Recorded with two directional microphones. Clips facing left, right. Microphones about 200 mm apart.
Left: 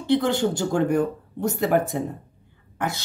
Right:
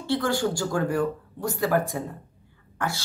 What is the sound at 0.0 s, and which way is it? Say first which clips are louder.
Speech: left 4 dB; 20° left (ahead or behind).